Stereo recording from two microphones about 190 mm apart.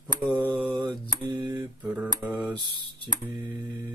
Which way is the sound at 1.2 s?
25° right (ahead or behind).